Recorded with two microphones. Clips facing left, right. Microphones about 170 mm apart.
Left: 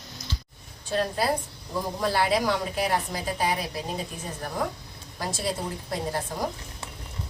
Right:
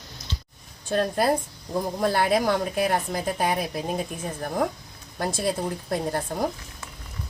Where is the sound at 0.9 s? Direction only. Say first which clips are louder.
Right 3 dB; 50° right (ahead or behind).